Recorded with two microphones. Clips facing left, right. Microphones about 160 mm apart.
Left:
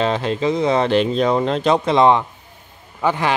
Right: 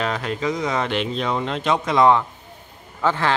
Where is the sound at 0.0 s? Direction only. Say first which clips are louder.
Left 5 dB; 25° left (ahead or behind).